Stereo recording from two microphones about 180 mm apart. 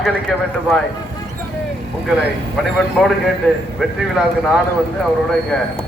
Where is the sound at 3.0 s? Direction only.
5° right (ahead or behind).